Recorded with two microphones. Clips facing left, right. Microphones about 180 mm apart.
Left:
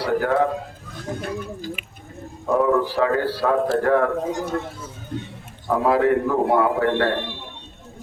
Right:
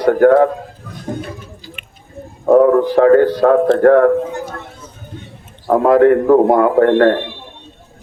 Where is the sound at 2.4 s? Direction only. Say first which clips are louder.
Right 9 dB; 50° right (ahead or behind).